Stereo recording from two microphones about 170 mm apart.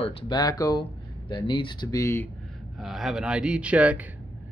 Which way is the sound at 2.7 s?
Centre (ahead or behind).